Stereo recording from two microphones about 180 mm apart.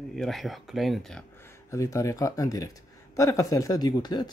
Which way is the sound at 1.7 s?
15° left (ahead or behind).